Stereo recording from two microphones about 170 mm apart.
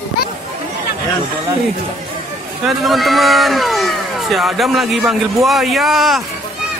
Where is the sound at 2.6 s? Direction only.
Centre (ahead or behind).